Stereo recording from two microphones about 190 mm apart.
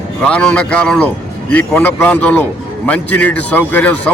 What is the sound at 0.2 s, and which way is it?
A man's voice, 5° left (ahead or behind).